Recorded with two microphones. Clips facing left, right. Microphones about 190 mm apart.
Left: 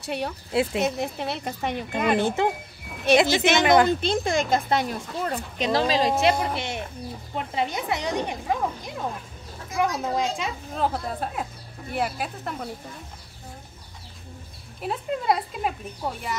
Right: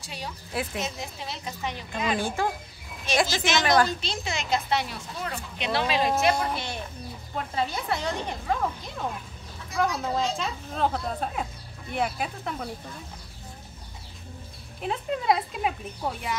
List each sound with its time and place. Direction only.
0.0 s speech: 60° left (ahead or behind)
2.2 s speech: 20° left (ahead or behind)
3.1 s speech: 60° left (ahead or behind)
3.6 s speech: 20° left (ahead or behind)
4.0 s speech: 55° left (ahead or behind); by 6.3 s 35° left (ahead or behind)
6.4 s speech: 20° left (ahead or behind); by 12.6 s 5° left (ahead or behind)
14.8 s speech: 5° left (ahead or behind)